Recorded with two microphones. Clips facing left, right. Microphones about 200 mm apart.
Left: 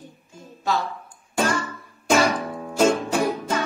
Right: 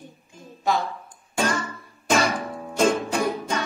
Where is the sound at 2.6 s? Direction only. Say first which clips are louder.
Left 2 dB; 5° left (ahead or behind).